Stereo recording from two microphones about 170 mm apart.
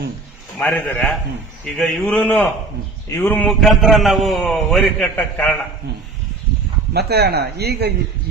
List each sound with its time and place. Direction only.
0.6 s a man's voice: 10° left (ahead or behind)
6.9 s speech: 70° right (ahead or behind)